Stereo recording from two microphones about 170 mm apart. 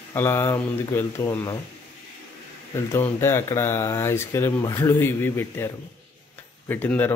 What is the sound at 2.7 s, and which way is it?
Speech, 15° left (ahead or behind).